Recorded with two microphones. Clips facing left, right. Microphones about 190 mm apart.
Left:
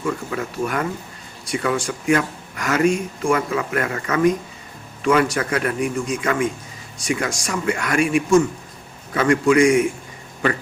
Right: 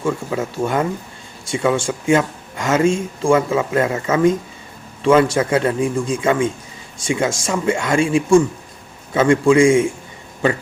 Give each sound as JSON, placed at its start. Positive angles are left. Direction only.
{"t": 0.0, "sound": "speech", "side_deg": -25}